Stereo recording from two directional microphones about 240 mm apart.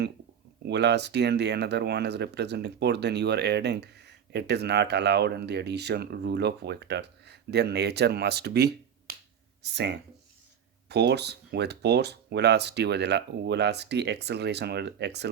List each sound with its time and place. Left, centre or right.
0.6 s speech: right